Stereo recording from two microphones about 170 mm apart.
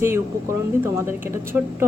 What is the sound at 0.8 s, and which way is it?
Speech, 15° right (ahead or behind).